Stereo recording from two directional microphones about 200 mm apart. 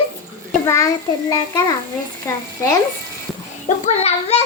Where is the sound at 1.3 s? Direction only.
20° left (ahead or behind).